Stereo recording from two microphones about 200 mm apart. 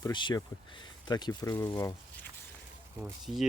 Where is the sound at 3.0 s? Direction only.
Centre (ahead or behind).